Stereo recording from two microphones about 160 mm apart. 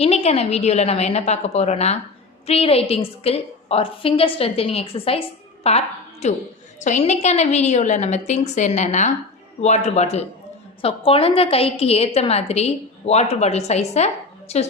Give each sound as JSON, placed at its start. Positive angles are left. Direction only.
{"t": 0.0, "sound": "a woman's voice", "side_deg": 40}